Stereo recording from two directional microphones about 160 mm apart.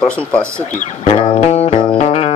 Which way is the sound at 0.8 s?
35° left (ahead or behind).